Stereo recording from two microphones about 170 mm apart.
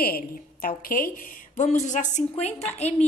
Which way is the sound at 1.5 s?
45° left (ahead or behind).